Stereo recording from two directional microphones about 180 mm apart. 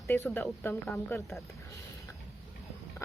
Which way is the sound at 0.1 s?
15° left (ahead or behind).